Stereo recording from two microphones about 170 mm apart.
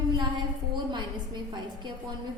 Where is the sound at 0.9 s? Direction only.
25° right (ahead or behind).